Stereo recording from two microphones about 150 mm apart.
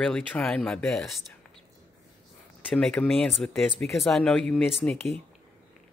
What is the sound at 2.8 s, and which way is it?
Speech, 5° left (ahead or behind).